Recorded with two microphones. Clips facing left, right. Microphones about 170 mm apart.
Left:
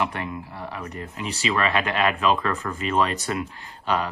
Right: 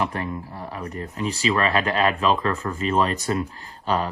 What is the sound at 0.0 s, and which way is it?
Speech, 35° right (ahead or behind).